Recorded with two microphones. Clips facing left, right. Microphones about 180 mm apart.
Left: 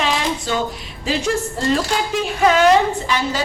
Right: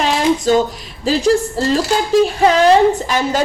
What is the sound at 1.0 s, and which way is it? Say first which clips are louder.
A woman's voice: right 7 dB; 35° right (ahead or behind).